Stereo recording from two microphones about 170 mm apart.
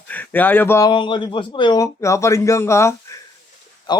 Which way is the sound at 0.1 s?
10° left (ahead or behind).